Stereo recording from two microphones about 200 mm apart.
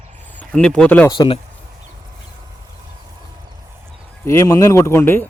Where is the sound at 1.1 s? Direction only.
25° left (ahead or behind).